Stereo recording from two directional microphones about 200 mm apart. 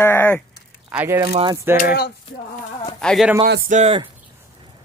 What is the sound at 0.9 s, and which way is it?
Speech, 10° right (ahead or behind).